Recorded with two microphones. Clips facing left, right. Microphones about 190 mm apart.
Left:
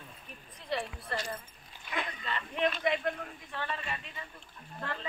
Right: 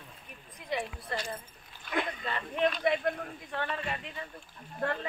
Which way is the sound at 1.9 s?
50° right (ahead or behind).